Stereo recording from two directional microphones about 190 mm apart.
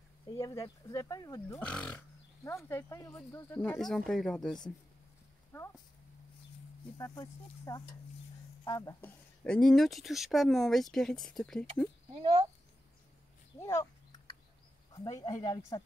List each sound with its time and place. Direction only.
0.4 s speech: 20° left (ahead or behind)
1.6 s speech: 5° left (ahead or behind)
5.5 s speech: 15° left (ahead or behind)
7.0 s speech: 20° left (ahead or behind)
9.4 s speech: 5° left (ahead or behind)
13.6 s speech: 15° left (ahead or behind)
14.9 s speech: 20° left (ahead or behind)